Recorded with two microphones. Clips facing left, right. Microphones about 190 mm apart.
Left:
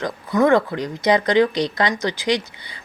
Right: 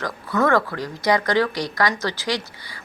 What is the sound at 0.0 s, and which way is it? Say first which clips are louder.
Speech: left 4 dB; 20° left (ahead or behind).